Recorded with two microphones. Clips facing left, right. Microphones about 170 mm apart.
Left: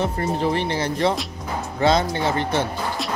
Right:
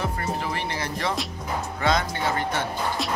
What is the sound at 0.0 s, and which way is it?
Speech, 30° left (ahead or behind).